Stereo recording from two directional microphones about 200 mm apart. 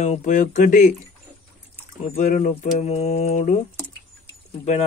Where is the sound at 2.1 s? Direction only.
40° left (ahead or behind).